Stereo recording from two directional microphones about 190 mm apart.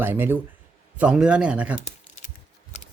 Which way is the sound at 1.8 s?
40° left (ahead or behind).